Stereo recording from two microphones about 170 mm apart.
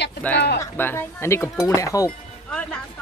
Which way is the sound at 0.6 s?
15° left (ahead or behind).